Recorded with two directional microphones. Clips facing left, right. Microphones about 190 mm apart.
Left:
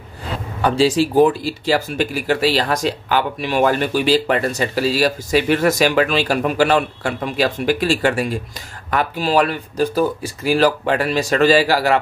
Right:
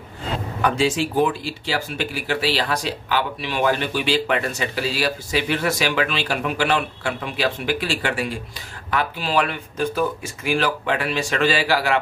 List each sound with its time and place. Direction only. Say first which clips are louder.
0.6 s speech: left 5 dB; 30° left (ahead or behind)